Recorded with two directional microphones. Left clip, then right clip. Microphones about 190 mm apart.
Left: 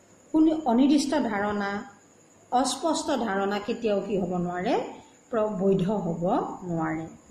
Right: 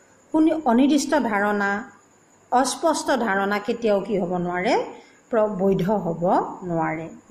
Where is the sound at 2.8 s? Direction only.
15° right (ahead or behind).